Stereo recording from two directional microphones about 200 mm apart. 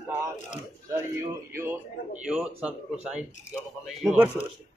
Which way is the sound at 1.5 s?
15° right (ahead or behind).